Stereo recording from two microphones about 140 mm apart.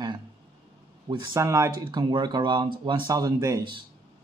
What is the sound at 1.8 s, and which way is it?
Speech, 35° right (ahead or behind).